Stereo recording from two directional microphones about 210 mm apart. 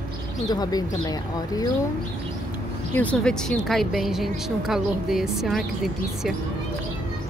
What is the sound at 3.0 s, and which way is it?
A woman's voice, 5° left (ahead or behind).